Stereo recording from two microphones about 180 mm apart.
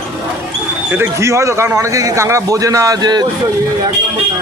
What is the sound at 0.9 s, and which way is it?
A man's voice, 15° right (ahead or behind).